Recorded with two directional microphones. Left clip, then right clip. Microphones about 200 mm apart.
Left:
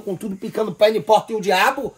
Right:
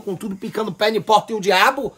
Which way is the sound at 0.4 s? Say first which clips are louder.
Left 4 dB; centre (ahead or behind).